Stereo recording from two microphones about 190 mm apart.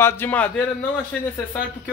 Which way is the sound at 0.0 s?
10° left (ahead or behind).